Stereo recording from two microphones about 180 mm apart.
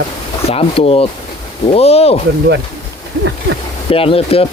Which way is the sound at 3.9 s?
30° left (ahead or behind).